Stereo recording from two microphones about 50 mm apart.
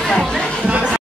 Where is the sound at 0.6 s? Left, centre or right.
Centre.